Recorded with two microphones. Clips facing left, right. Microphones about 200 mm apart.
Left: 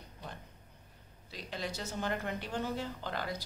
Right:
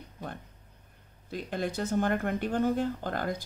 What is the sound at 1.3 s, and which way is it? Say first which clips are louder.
Speech: right 8 dB; 50° right (ahead or behind).